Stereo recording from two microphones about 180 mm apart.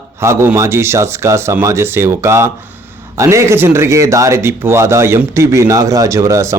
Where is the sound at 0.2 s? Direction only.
15° right (ahead or behind).